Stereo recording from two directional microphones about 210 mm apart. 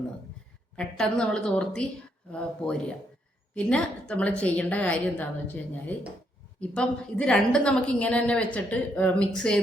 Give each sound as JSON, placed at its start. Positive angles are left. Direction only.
{"t": 0.8, "sound": "a woman's voice", "side_deg": 5}
{"t": 6.6, "sound": "a woman's voice", "side_deg": 5}